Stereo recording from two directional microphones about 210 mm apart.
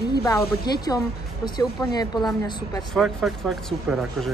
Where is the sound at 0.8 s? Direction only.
20° left (ahead or behind).